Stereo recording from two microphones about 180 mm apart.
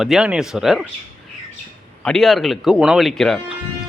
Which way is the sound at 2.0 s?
5° left (ahead or behind).